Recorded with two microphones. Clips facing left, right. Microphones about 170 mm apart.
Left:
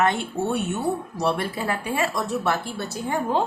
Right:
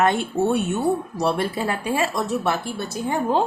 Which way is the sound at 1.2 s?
30° right (ahead or behind).